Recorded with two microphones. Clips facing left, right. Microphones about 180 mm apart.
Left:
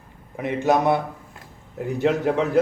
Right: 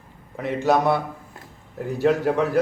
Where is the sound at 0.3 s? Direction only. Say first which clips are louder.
Even; 15° left (ahead or behind).